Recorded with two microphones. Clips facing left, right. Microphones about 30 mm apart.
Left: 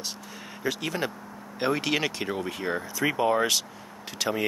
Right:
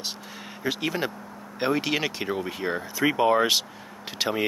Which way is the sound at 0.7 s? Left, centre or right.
Centre.